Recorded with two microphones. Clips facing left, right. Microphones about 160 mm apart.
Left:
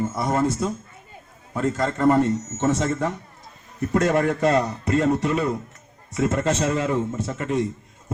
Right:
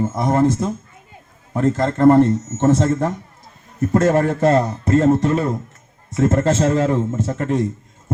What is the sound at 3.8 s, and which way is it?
A man's voice, 45° right (ahead or behind).